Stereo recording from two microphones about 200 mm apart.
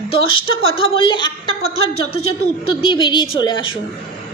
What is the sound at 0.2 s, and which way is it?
Speech, 85° left.